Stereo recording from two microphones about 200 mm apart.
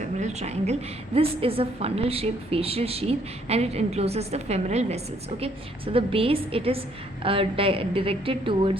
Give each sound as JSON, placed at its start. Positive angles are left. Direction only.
{"t": 0.0, "sound": "a woman's voice", "side_deg": -35}